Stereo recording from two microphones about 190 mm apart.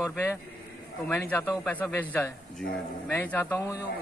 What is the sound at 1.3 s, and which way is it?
A man's voice, 10° left (ahead or behind).